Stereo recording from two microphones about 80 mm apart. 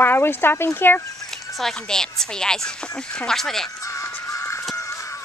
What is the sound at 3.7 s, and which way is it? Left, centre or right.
Music, left.